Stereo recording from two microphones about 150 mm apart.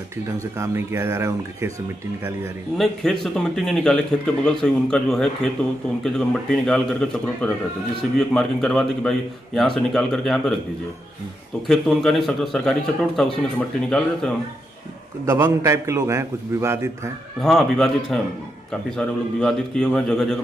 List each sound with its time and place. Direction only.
0.4 s speech: 20° right (ahead or behind)
2.8 s speech: 5° left (ahead or behind)
11.6 s speech: centre (ahead or behind)
15.2 s a man's voice: 20° right (ahead or behind)
17.4 s speech: 5° left (ahead or behind)